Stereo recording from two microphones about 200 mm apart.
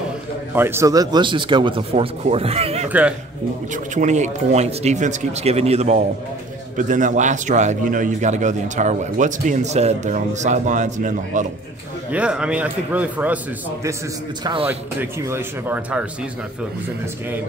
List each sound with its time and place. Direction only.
0.6 s speech: 10° right (ahead or behind); by 2.9 s 30° right (ahead or behind)
2.9 s a man's voice: 5° right (ahead or behind)
3.7 s a man's voice: 35° right (ahead or behind)
12.1 s a man's voice: 5° right (ahead or behind)
14.4 s speech: 25° right (ahead or behind)
14.7 s a man's voice: 10° right (ahead or behind)